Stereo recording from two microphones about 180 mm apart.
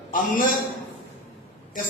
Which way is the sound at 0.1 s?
50° left (ahead or behind).